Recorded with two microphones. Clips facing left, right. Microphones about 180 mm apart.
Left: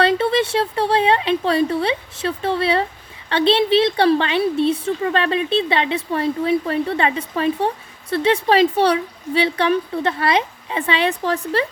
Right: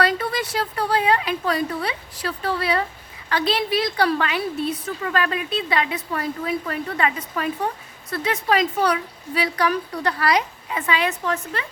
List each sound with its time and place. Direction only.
0.0 s a woman's voice: 25° left (ahead or behind)